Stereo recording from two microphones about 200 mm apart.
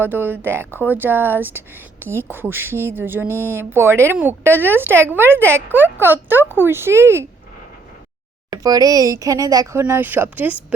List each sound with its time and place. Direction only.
0.0 s a woman's voice: 10° right (ahead or behind)
8.4 s a woman's voice: 20° right (ahead or behind)